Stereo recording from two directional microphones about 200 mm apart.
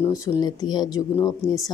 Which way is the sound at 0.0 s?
15° left (ahead or behind).